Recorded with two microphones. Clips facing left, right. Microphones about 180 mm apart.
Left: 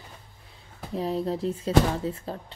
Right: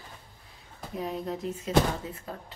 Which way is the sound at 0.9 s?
30° left (ahead or behind).